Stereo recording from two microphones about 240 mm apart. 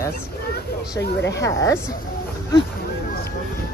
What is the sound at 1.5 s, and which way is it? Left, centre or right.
Speech, centre.